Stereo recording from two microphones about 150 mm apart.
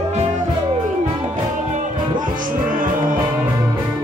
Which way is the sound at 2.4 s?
65° right (ahead or behind).